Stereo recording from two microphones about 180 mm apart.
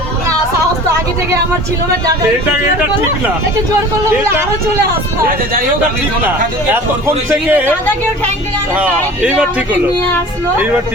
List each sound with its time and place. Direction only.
0.9 s speech: 15° right (ahead or behind)
7.3 s speech: 10° right (ahead or behind)
8.7 s speech: 10° right (ahead or behind)